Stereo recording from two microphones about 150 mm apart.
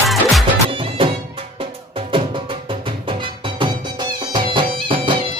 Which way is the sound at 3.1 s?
35° right (ahead or behind).